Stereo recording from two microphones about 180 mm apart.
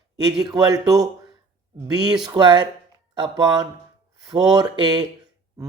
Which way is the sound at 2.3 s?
25° right (ahead or behind).